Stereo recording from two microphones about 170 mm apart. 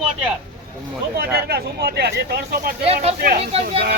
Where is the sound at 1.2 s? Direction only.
70° right (ahead or behind).